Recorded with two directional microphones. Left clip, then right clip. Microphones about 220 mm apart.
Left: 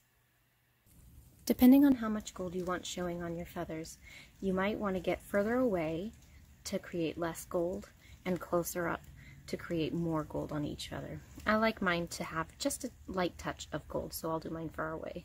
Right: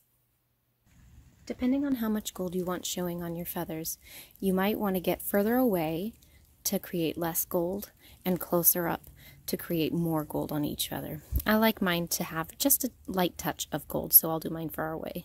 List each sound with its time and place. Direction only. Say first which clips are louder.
1.4 s speech: left 5 dB; 40° left (ahead or behind)
2.0 s speech: right 5 dB; 40° right (ahead or behind)